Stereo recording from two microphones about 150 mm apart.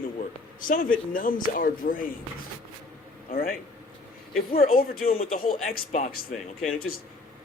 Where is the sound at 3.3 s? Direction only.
70° left (ahead or behind).